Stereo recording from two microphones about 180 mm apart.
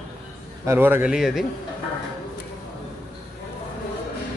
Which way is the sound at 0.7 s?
10° right (ahead or behind).